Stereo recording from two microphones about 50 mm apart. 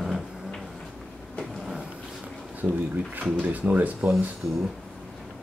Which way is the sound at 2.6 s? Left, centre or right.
Right.